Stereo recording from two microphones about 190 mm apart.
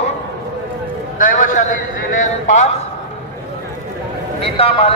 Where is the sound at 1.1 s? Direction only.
45° left (ahead or behind).